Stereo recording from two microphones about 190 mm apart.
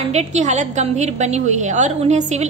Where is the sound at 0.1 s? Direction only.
35° right (ahead or behind).